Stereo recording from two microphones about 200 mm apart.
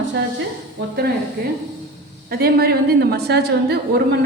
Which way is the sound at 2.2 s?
50° right (ahead or behind).